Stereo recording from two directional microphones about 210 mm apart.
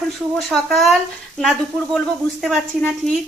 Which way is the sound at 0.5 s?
Centre (ahead or behind).